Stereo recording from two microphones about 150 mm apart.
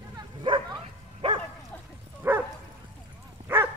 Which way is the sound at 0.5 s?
35° right (ahead or behind).